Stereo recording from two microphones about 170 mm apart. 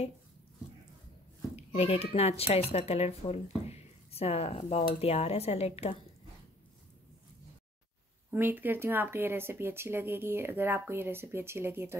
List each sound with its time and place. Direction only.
1.8 s a child's voice: 40° left (ahead or behind)
8.3 s speech: 10° right (ahead or behind)